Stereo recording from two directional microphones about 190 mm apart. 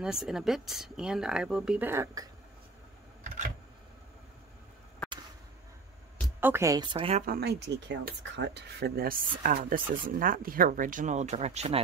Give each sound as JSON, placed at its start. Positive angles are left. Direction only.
{"t": 0.0, "sound": "speech", "side_deg": 0}
{"t": 5.0, "sound": "a sound", "side_deg": 5}
{"t": 6.4, "sound": "a woman's voice", "side_deg": -15}
{"t": 7.2, "sound": "speech", "side_deg": -55}